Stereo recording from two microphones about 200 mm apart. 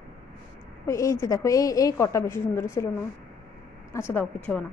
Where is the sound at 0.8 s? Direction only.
15° left (ahead or behind).